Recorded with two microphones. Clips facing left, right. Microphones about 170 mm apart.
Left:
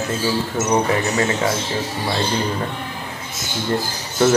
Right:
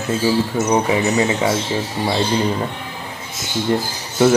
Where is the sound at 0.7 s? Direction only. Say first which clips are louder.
Right 1 dB; 15° right (ahead or behind).